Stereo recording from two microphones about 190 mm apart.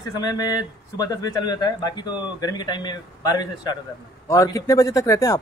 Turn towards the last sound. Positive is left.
turn(degrees=15)  # may be behind; listen again after turning